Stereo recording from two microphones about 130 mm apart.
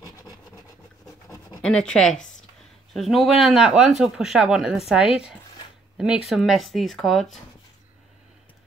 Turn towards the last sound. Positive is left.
turn(degrees=0)  # may be behind; listen again after turning